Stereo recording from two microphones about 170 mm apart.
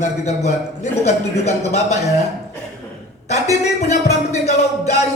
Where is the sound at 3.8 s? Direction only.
40° left (ahead or behind).